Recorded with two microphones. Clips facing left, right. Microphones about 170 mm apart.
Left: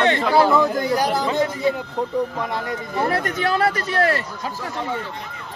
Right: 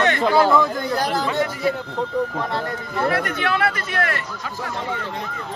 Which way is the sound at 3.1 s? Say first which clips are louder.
Left 1 dB; 40° left (ahead or behind).